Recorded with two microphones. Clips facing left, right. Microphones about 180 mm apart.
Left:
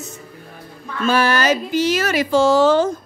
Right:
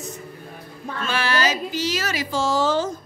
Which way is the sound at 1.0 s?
45° left (ahead or behind).